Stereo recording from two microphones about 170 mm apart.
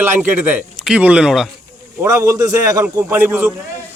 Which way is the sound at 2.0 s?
15° right (ahead or behind).